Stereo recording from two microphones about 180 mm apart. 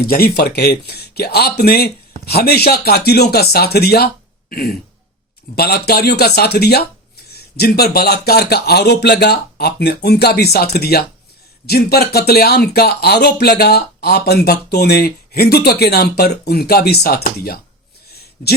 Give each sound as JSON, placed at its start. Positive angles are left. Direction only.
{"t": 0.1, "sound": "speech", "side_deg": 60}